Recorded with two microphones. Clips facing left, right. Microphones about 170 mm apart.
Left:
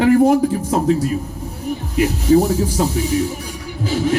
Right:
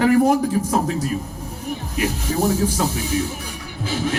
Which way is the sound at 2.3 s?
35° left (ahead or behind).